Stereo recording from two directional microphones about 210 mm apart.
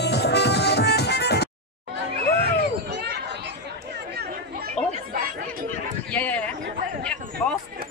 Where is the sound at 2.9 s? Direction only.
55° right (ahead or behind).